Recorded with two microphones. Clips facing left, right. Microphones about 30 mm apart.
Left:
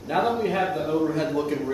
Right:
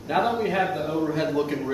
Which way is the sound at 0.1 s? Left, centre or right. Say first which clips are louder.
Even; centre.